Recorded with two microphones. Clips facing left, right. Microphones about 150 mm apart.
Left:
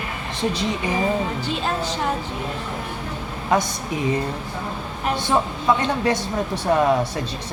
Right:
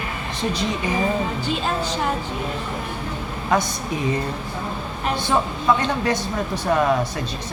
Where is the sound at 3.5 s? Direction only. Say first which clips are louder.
Even; 20° left (ahead or behind).